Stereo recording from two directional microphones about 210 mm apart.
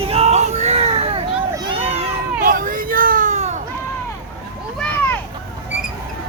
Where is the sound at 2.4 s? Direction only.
40° right (ahead or behind).